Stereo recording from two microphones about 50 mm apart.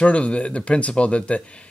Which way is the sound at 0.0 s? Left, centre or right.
Left.